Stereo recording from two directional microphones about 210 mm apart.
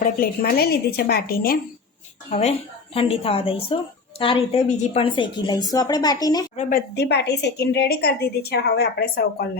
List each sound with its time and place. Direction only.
0.0 s a woman's voice: 45° left (ahead or behind)
2.3 s a woman's voice: 30° left (ahead or behind)
6.6 s a woman's voice: 40° left (ahead or behind)